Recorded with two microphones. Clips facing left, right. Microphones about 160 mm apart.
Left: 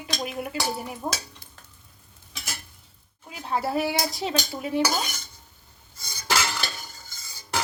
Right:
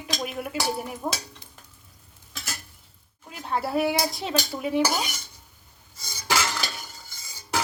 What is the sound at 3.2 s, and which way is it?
Speech, centre (ahead or behind).